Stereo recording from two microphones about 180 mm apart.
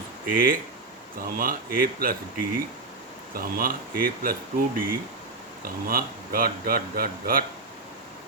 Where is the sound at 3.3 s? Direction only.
55° right (ahead or behind).